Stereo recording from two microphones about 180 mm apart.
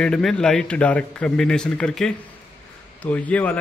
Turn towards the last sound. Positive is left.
turn(degrees=5)  # may be behind; listen again after turning